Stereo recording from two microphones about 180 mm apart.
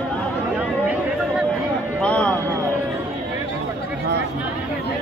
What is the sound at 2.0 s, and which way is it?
Speech, 5° left (ahead or behind).